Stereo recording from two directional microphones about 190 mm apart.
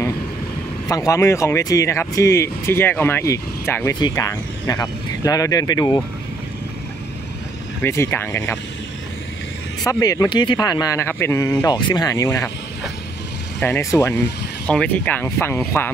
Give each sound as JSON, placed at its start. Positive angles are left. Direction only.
{"t": 0.8, "sound": "speech", "side_deg": 15}
{"t": 7.8, "sound": "speech", "side_deg": 15}
{"t": 9.8, "sound": "speech", "side_deg": 15}
{"t": 13.6, "sound": "speech", "side_deg": 15}